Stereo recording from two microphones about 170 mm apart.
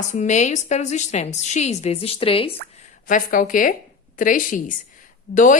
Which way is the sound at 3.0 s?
55° left (ahead or behind).